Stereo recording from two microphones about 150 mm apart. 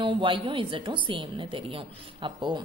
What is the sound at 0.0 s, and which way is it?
A woman's voice, 35° right (ahead or behind).